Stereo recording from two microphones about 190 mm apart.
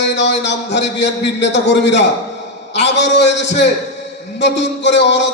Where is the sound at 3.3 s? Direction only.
65° left (ahead or behind).